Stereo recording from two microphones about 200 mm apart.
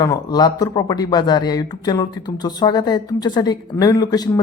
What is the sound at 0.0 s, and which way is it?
Speech, 20° left (ahead or behind).